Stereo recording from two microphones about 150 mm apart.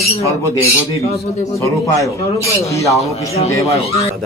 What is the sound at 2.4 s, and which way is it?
Speech, 20° left (ahead or behind).